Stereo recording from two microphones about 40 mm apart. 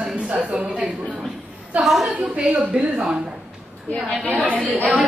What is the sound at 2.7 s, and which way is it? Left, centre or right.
Speech, right.